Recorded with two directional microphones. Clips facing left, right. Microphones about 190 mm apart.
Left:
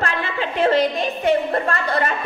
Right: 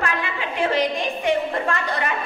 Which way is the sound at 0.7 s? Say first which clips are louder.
Left 3 dB; 15° right (ahead or behind).